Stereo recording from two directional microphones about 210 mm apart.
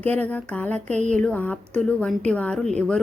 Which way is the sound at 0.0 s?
5° left (ahead or behind).